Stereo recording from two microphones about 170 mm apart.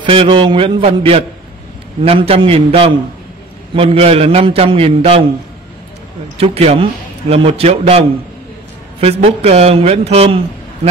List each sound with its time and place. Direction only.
0.0 s a man's voice: 30° right (ahead or behind)
6.3 s a man's voice: 35° right (ahead or behind)
9.0 s a man's voice: 35° right (ahead or behind)